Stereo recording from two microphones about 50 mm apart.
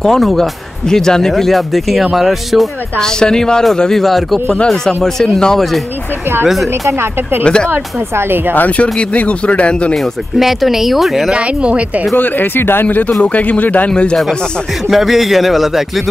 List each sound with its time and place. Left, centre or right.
0.0 s speech: centre
3.0 s speech: centre
8.5 s speech: left
10.3 s speech: centre
11.3 s speech: right
12.2 s speech: left
13.2 s speech: left
14.9 s speech: centre